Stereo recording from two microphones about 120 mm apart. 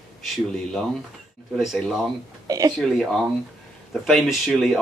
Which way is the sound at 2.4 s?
30° right (ahead or behind).